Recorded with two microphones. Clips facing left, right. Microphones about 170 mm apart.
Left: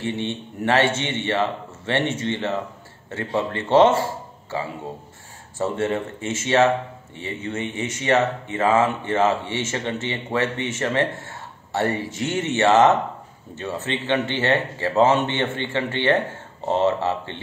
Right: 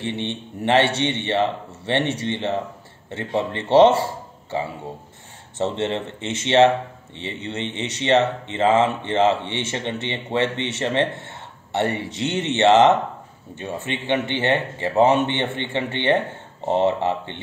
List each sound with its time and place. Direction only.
0.0 s speech: 20° right (ahead or behind)
5.6 s speech: 20° right (ahead or behind)